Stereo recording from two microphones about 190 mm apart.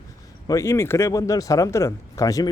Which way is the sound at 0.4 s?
15° left (ahead or behind).